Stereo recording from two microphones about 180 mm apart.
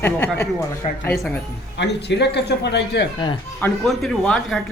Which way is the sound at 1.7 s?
70° left (ahead or behind).